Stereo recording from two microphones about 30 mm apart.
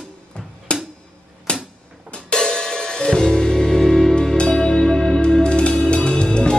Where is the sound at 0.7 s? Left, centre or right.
Left.